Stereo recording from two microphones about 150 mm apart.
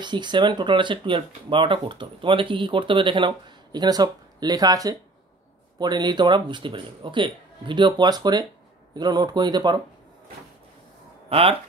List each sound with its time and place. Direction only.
0.0 s speech: 30° right (ahead or behind)
11.2 s speech: 40° right (ahead or behind)